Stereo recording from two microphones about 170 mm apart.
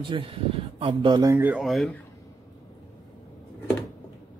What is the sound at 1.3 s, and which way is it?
Speech, 10° right (ahead or behind).